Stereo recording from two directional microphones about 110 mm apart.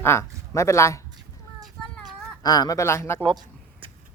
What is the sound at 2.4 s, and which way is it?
Speech, 35° left (ahead or behind).